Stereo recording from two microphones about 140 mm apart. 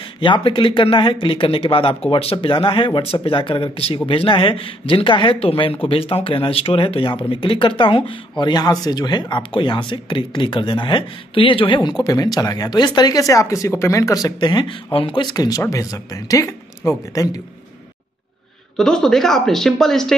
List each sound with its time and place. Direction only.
0.2 s speech: 35° left (ahead or behind)
18.8 s speech: 5° left (ahead or behind)